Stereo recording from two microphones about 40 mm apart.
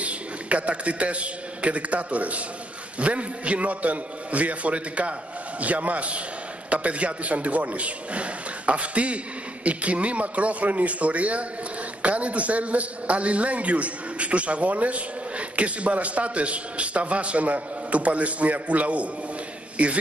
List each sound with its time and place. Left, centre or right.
0.0 s a man's voice: right